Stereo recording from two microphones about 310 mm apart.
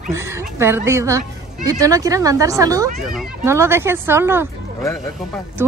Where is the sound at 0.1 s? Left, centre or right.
Centre.